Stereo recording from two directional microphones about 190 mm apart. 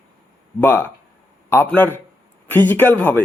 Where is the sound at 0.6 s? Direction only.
10° left (ahead or behind).